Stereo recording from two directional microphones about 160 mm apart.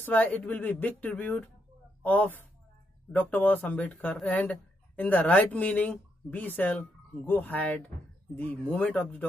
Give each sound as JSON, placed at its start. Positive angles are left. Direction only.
{"t": 0.0, "sound": "speech", "side_deg": 10}